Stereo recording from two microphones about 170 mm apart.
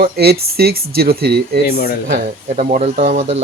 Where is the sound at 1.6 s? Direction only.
70° left (ahead or behind).